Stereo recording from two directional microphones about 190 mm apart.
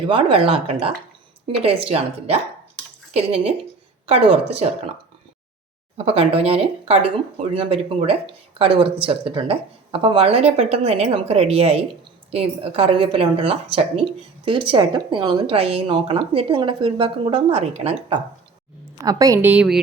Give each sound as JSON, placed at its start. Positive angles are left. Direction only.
{"t": 0.1, "sound": "speech", "side_deg": -25}
{"t": 6.0, "sound": "speech", "side_deg": -30}
{"t": 19.0, "sound": "a woman's voice", "side_deg": -15}